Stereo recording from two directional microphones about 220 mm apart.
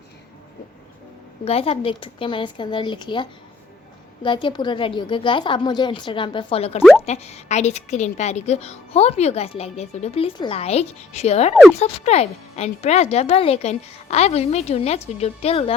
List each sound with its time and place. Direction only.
1.5 s a woman's voice: 25° left (ahead or behind)